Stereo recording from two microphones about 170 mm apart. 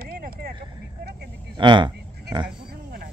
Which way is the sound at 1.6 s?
25° right (ahead or behind).